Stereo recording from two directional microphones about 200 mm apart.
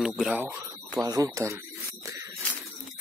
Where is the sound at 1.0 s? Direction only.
15° right (ahead or behind).